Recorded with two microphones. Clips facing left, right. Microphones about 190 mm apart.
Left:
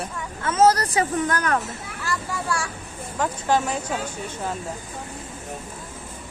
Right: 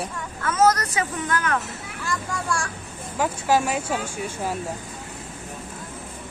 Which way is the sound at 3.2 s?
10° right (ahead or behind).